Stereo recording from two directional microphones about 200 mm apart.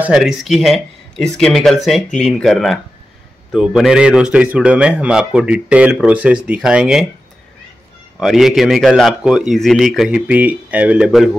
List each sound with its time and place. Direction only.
0.0 s a man's voice: 5° right (ahead or behind)
8.2 s a man's voice: centre (ahead or behind)